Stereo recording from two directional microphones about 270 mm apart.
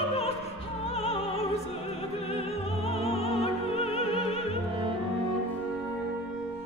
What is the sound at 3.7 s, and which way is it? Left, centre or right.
Music, left.